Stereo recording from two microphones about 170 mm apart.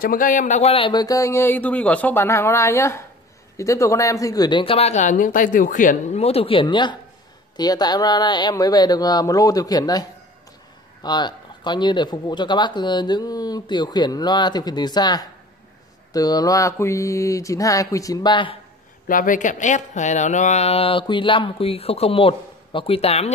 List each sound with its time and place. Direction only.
0.0 s speech: 55° left (ahead or behind); by 18.6 s 30° left (ahead or behind)
19.0 s speech: 50° left (ahead or behind); by 23.3 s 35° left (ahead or behind)